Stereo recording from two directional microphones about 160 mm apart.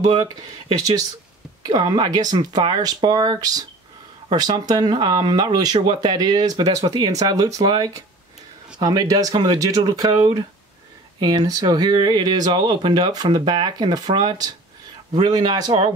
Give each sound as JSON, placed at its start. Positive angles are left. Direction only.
{"t": 1.7, "sound": "speech", "side_deg": -25}